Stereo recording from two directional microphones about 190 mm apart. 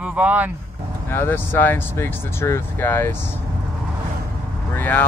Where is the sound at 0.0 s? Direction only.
5° right (ahead or behind).